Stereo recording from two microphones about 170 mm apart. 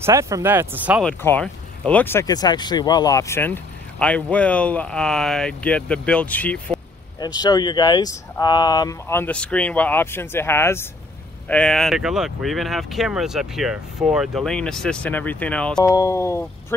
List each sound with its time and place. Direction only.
0.0 s speech: 15° right (ahead or behind)
1.0 s speech: 10° left (ahead or behind)
7.2 s speech: 25° left (ahead or behind); by 15.8 s 5° left (ahead or behind)
15.8 s speech: 20° left (ahead or behind)